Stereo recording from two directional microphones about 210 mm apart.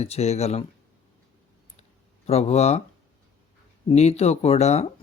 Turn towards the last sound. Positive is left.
turn(degrees=30)  # may be behind; listen again after turning